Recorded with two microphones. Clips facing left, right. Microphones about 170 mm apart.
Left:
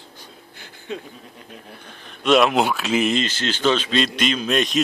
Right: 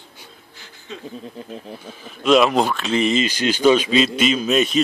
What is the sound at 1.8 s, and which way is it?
Speech, 5° right (ahead or behind).